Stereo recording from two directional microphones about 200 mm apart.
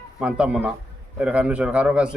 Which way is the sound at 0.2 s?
5° right (ahead or behind).